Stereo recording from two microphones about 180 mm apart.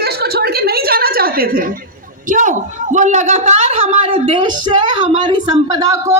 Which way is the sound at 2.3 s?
45° right (ahead or behind).